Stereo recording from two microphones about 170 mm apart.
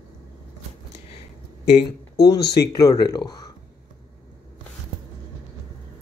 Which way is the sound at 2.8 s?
25° left (ahead or behind).